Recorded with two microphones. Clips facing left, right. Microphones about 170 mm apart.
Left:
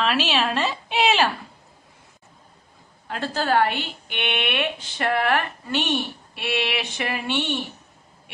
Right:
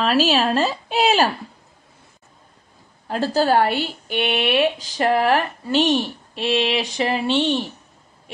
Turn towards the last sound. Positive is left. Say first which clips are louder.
# right 6 dB
turn(degrees=10)  # may be behind; listen again after turning